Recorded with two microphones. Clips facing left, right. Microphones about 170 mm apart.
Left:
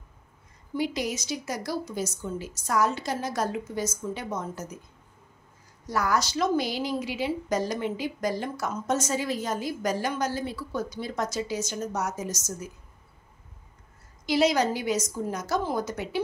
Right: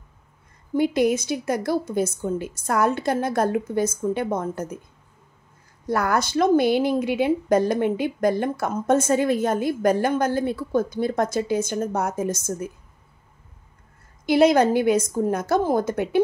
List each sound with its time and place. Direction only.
0.7 s speech: 55° right (ahead or behind)
5.9 s speech: 55° right (ahead or behind)
14.2 s speech: 55° right (ahead or behind)